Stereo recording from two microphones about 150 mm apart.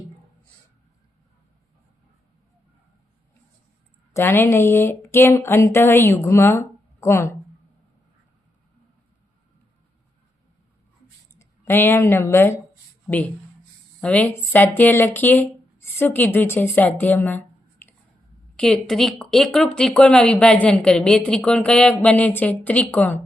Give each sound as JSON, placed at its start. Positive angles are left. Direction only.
{"t": 4.1, "sound": "speech", "side_deg": 15}
{"t": 11.3, "sound": "speech", "side_deg": 15}